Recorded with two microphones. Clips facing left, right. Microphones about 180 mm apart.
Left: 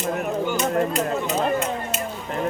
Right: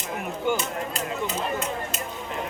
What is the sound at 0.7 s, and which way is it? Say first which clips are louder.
Speech: left 9 dB; 50° left (ahead or behind).